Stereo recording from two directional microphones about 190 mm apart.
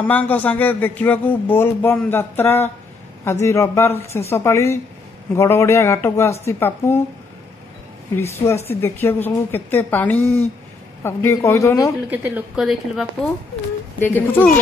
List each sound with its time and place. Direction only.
0.0 s speech: 10° left (ahead or behind)
8.1 s speech: 15° left (ahead or behind)
12.1 s speech: 10° right (ahead or behind)
13.9 s speech: 10° left (ahead or behind)